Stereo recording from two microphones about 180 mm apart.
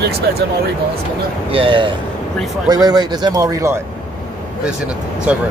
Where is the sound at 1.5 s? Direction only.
30° right (ahead or behind).